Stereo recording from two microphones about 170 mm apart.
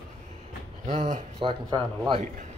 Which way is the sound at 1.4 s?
30° right (ahead or behind).